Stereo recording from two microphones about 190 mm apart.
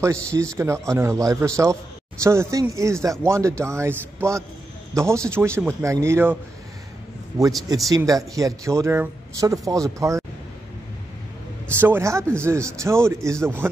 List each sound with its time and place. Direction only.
0.0 s speech: 15° right (ahead or behind)
7.9 s speech: 15° right (ahead or behind)
11.8 s speech: 15° right (ahead or behind)